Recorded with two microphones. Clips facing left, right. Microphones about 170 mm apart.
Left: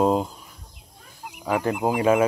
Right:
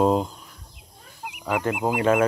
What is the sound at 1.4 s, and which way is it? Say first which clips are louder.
Speech: left 1 dB; 15° left (ahead or behind).